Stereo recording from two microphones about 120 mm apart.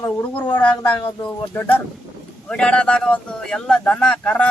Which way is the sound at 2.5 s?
10° left (ahead or behind).